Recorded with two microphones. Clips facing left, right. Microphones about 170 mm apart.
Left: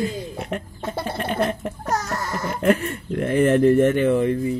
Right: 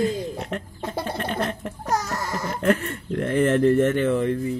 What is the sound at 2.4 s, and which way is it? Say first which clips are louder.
Speech: left 3 dB; 10° left (ahead or behind).